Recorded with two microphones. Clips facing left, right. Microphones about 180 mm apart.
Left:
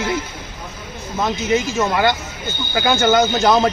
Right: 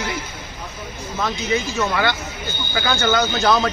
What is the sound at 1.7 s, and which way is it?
Speech, 15° left (ahead or behind).